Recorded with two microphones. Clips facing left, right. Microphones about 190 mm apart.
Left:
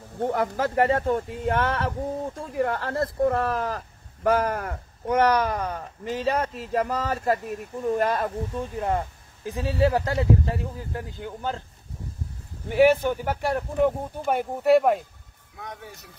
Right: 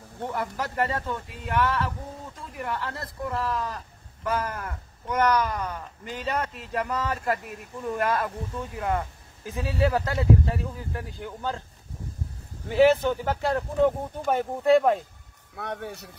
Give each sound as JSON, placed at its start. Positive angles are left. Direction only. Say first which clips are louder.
{"t": 0.2, "sound": "speech", "louder": "left 6 dB", "side_deg": 50}
{"t": 5.6, "sound": "a man's voice", "louder": "left 3 dB", "side_deg": 35}
{"t": 12.7, "sound": "speech", "louder": "left 1 dB", "side_deg": 15}
{"t": 15.5, "sound": "speech", "louder": "right 6 dB", "side_deg": -65}